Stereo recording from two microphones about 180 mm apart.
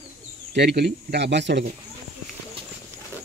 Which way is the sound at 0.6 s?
70° right (ahead or behind).